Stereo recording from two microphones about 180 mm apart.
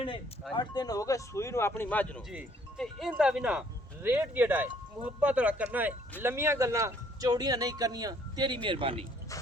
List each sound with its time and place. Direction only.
0.5 s speech: 25° left (ahead or behind)
2.3 s a man's voice: centre (ahead or behind); by 9.0 s 30° right (ahead or behind)